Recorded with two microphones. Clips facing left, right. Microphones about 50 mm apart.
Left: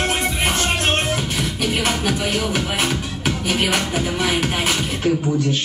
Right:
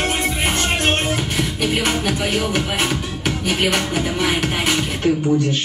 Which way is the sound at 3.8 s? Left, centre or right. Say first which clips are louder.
Right 1 dB; centre.